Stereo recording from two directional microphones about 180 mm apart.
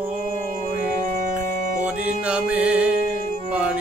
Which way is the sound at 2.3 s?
5° right (ahead or behind).